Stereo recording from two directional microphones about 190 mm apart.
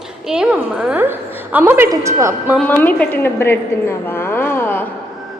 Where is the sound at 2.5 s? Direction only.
10° left (ahead or behind).